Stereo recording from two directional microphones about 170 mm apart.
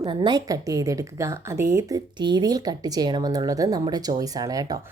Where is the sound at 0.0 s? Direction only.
30° right (ahead or behind).